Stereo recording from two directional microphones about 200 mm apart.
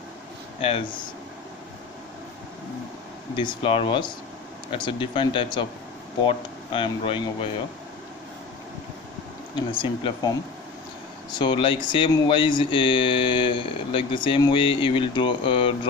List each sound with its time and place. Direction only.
0.6 s speech: 30° left (ahead or behind)
3.3 s speech: 25° left (ahead or behind)
9.6 s speech: 25° left (ahead or behind)
11.3 s speech: 25° left (ahead or behind)